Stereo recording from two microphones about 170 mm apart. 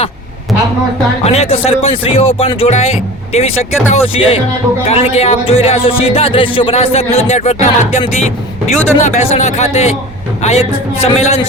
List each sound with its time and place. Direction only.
1.2 s speech: 35° left (ahead or behind)